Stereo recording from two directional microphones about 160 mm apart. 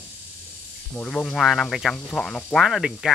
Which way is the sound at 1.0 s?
5° left (ahead or behind).